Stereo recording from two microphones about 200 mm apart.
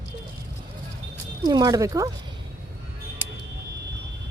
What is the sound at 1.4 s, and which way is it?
Speech, 20° right (ahead or behind).